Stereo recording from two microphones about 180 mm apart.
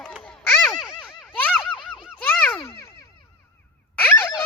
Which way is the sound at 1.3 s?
10° left (ahead or behind).